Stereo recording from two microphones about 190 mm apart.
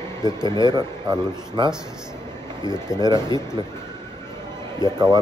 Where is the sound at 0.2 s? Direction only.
20° right (ahead or behind).